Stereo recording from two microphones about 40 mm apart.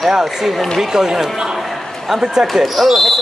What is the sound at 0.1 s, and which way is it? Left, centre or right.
Speech, centre.